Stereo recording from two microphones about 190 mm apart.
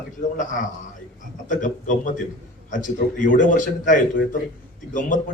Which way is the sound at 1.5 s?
45° left (ahead or behind).